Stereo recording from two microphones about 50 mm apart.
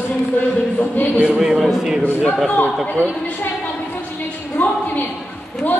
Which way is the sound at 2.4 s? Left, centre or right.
Left.